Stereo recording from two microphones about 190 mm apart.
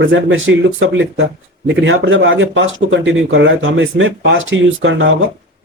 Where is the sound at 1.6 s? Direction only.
70° right (ahead or behind).